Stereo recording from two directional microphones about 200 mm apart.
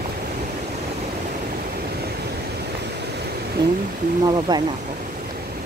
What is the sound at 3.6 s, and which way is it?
Speech, 20° right (ahead or behind).